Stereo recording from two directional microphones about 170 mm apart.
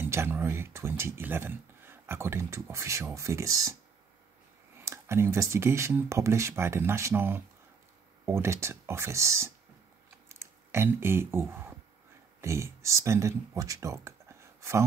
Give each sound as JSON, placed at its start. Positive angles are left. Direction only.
{"t": 0.0, "sound": "speech", "side_deg": -15}
{"t": 4.8, "sound": "speech", "side_deg": -15}
{"t": 10.2, "sound": "clicking", "side_deg": -15}
{"t": 12.4, "sound": "speech", "side_deg": -15}